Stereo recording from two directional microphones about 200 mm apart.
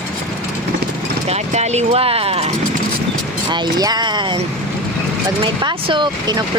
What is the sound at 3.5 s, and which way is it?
Speech, 20° right (ahead or behind).